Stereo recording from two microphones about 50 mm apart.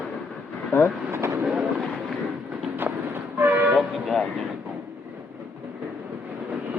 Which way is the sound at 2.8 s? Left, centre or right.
Right.